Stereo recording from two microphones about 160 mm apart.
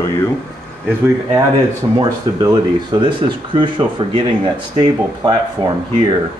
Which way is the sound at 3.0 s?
30° right (ahead or behind).